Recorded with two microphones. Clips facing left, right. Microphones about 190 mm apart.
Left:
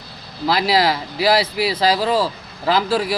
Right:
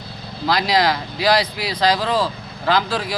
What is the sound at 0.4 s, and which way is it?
Speech, 5° left (ahead or behind).